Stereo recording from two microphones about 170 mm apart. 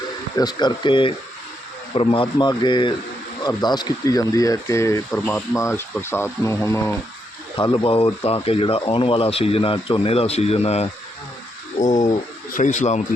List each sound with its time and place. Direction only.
0.3 s a man's voice: 25° left (ahead or behind)
7.5 s speech: 25° left (ahead or behind); by 13.0 s 45° left (ahead or behind)